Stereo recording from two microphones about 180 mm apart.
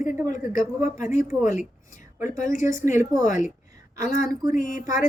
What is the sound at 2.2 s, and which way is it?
Speech, 15° right (ahead or behind).